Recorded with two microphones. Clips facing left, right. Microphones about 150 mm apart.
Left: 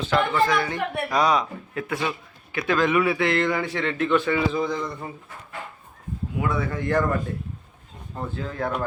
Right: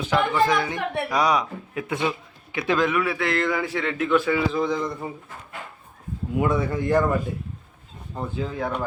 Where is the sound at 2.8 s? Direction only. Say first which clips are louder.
Left 2 dB; centre (ahead or behind).